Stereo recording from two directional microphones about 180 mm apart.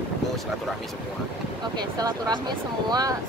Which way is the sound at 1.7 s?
25° right (ahead or behind).